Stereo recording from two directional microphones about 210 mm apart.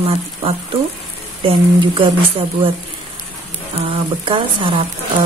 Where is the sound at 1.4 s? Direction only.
25° right (ahead or behind).